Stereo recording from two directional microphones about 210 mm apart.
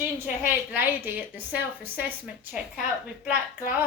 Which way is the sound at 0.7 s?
10° right (ahead or behind).